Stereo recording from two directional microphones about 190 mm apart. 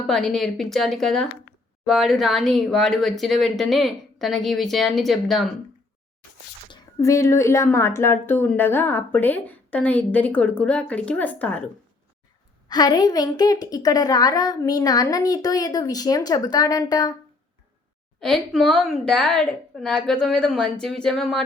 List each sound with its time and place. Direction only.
0.1 s speech: centre (ahead or behind)
6.7 s a woman's voice: 15° left (ahead or behind)
12.6 s a woman's voice: 20° left (ahead or behind)
18.2 s speech: centre (ahead or behind)